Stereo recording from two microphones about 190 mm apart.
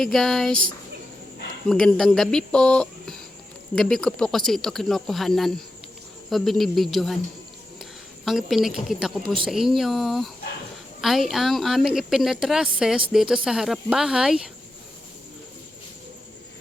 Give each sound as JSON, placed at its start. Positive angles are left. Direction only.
{"t": 0.0, "sound": "speech", "side_deg": 0}
{"t": 1.7, "sound": "speech", "side_deg": 5}
{"t": 8.2, "sound": "speech", "side_deg": 0}
{"t": 9.2, "sound": "speech", "side_deg": -25}
{"t": 9.5, "sound": "speech", "side_deg": 0}